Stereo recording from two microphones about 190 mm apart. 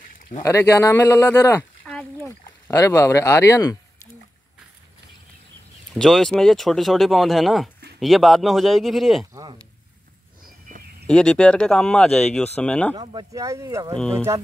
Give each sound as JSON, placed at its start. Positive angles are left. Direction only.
{"t": 0.4, "sound": "speech", "side_deg": 15}
{"t": 5.9, "sound": "speech", "side_deg": 0}
{"t": 9.3, "sound": "speech", "side_deg": -20}
{"t": 10.7, "sound": "a sound", "side_deg": -40}
{"t": 11.1, "sound": "speech", "side_deg": 5}
{"t": 12.9, "sound": "speech", "side_deg": -20}